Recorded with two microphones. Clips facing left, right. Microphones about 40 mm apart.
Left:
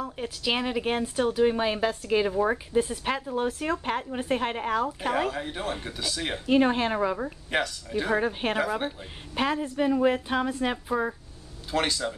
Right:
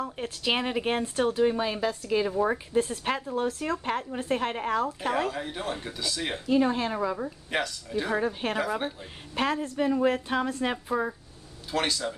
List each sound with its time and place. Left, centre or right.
0.5 s speech: centre
1.4 s a woman's voice: left
2.3 s speech: centre
3.3 s speech: centre
6.4 s speech: left
7.5 s speech: centre
8.2 s a woman's voice: left
8.8 s speech: centre